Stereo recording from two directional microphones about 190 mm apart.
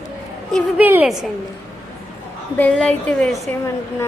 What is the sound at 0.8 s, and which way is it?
Speech, 10° right (ahead or behind).